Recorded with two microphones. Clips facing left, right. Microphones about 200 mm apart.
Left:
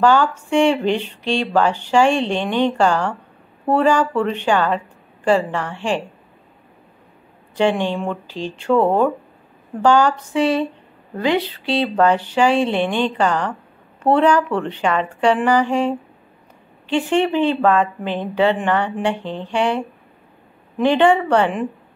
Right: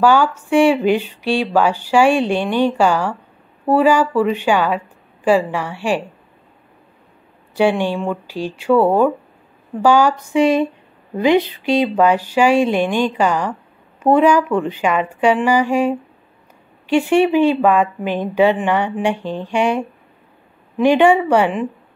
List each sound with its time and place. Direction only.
0.0 s speech: 10° right (ahead or behind)
7.5 s speech: 10° right (ahead or behind)
20.8 s speech: 10° right (ahead or behind)